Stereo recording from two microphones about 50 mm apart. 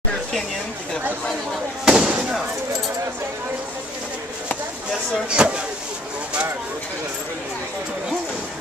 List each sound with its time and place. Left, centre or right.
1.9 s fireworks: centre
5.3 s speech: centre